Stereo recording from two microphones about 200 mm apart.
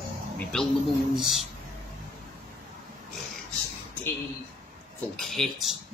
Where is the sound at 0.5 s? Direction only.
5° left (ahead or behind).